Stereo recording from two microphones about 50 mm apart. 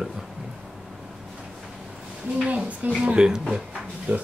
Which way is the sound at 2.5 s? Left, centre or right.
Right.